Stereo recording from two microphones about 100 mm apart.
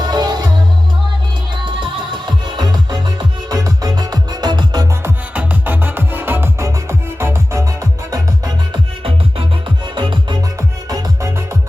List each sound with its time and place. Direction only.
0.0 s music: 45° right (ahead or behind)
1.6 s music: 50° right (ahead or behind)
5.0 s music: 15° right (ahead or behind)
9.9 s music: 55° right (ahead or behind)
10.8 s music: 35° right (ahead or behind)